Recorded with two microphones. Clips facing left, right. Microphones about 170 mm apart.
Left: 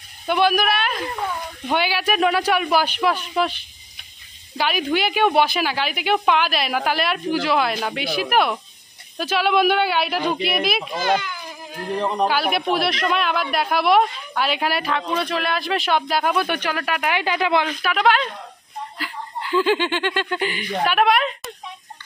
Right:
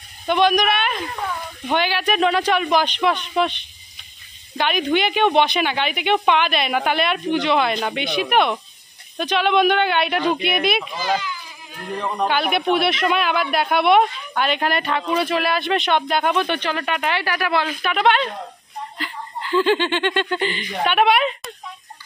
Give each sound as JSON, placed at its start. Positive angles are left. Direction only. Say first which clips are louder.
{"t": 0.3, "sound": "speech", "louder": "right 1 dB", "side_deg": 5}
{"t": 4.6, "sound": "speech", "louder": "right 2 dB", "side_deg": 5}
{"t": 10.9, "sound": "a child's voice", "louder": "left 2 dB", "side_deg": 60}
{"t": 12.3, "sound": "speech", "louder": "right 1 dB", "side_deg": 0}
{"t": 17.2, "sound": "speech", "louder": "left 2 dB", "side_deg": 20}
{"t": 17.6, "sound": "speech", "louder": "even", "side_deg": 0}